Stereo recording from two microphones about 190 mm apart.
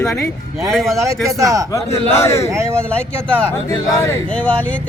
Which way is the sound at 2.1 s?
15° left (ahead or behind).